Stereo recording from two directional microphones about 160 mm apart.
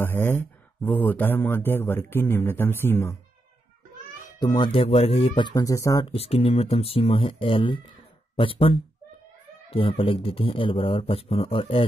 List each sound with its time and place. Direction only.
0.0 s speech: 15° left (ahead or behind)
4.4 s speech: 30° left (ahead or behind)
6.0 s speech: 40° left (ahead or behind)